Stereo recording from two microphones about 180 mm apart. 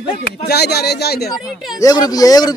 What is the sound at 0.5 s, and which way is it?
Speech, 65° left (ahead or behind).